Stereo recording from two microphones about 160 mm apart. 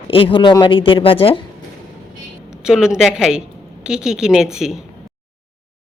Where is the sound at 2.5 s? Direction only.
5° right (ahead or behind).